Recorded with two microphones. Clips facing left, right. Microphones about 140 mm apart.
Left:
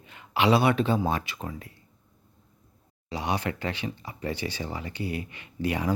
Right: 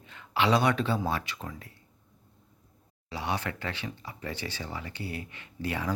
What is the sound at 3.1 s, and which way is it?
Speech, 15° left (ahead or behind).